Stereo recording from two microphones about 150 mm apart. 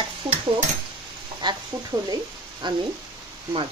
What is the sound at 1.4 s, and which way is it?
Speech, 30° right (ahead or behind).